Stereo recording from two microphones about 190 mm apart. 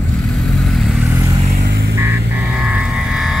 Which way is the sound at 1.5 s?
50° right (ahead or behind).